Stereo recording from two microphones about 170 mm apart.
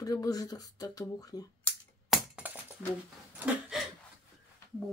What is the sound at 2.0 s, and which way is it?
Crushing, centre (ahead or behind).